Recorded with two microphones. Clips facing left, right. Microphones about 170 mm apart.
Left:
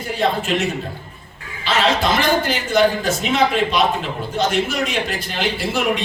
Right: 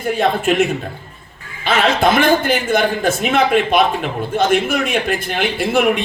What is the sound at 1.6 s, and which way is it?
A man's voice, 55° right (ahead or behind).